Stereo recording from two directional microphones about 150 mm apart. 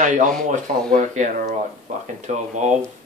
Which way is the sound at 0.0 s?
55° right (ahead or behind).